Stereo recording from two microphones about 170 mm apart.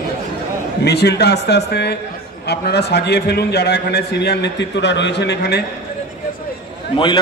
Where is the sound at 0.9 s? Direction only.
75° left (ahead or behind).